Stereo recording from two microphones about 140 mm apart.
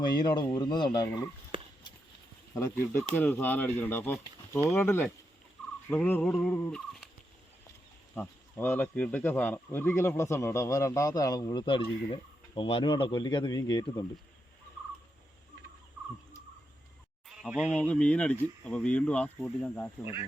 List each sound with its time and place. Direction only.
0.1 s speech: 30° left (ahead or behind)
0.5 s insect: 30° left (ahead or behind)
2.6 s speech: 20° left (ahead or behind)
8.1 s insect: 15° left (ahead or behind); by 11.8 s 35° left (ahead or behind)
12.5 s speech: 40° left (ahead or behind)
17.7 s speech: 10° left (ahead or behind)